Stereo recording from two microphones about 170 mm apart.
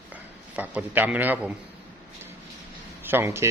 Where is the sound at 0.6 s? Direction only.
10° right (ahead or behind).